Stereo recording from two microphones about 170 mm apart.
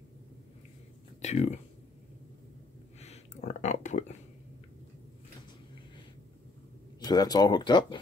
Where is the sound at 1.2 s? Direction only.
40° left (ahead or behind).